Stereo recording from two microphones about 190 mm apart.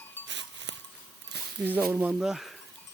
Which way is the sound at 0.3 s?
70° right (ahead or behind).